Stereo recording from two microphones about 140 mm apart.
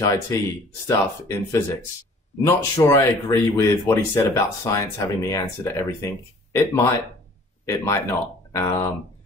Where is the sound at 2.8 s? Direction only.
20° left (ahead or behind).